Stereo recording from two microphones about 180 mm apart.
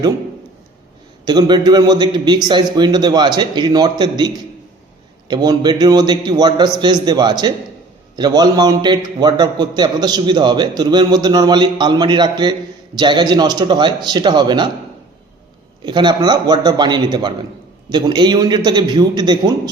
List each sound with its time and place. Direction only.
1.2 s a man's voice: 25° right (ahead or behind)
5.3 s a man's voice: 25° right (ahead or behind)
15.8 s a man's voice: 25° right (ahead or behind)